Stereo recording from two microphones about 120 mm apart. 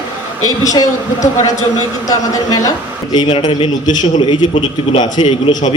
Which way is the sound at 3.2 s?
45° left (ahead or behind).